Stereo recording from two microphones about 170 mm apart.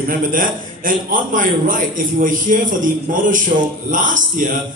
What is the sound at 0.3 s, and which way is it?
A man's voice, 55° right (ahead or behind).